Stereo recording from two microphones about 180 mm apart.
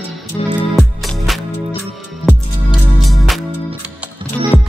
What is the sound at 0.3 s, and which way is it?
Music, 15° left (ahead or behind).